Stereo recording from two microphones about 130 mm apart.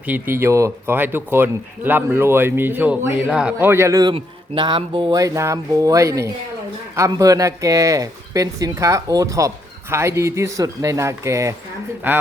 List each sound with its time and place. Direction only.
0.0 s speech: 15° right (ahead or behind)
3.7 s speech: 20° right (ahead or behind)
4.1 s speech: 35° right (ahead or behind)
5.1 s speech: 25° right (ahead or behind)